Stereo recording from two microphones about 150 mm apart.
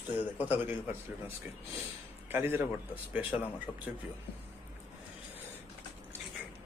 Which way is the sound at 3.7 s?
5° left (ahead or behind).